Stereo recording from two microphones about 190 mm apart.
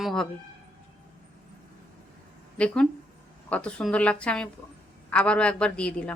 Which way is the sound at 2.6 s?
5° left (ahead or behind).